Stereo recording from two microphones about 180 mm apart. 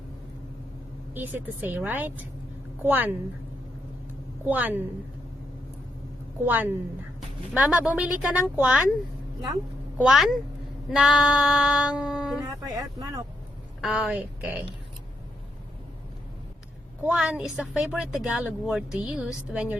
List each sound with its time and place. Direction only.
1.1 s speech: 10° right (ahead or behind)
4.4 s speech: 10° right (ahead or behind)
6.4 s speech: 10° right (ahead or behind)
10.0 s speech: 5° right (ahead or behind)
12.6 s speech: 20° right (ahead or behind)
13.8 s speech: 5° right (ahead or behind)
17.1 s speech: 5° right (ahead or behind)